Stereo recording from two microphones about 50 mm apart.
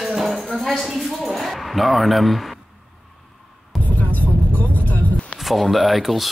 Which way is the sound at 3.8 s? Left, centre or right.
Left.